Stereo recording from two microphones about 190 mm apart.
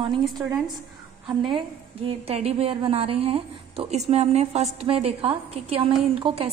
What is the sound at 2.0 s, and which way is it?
A woman's voice, 30° right (ahead or behind).